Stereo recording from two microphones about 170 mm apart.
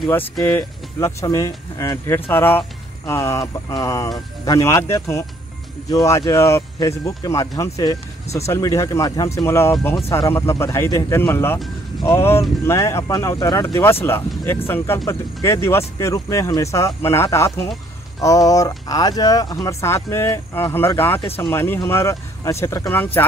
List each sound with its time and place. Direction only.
0.5 s speech: 15° left (ahead or behind)
21.2 s speech: 30° left (ahead or behind)
21.5 s speech: 15° left (ahead or behind)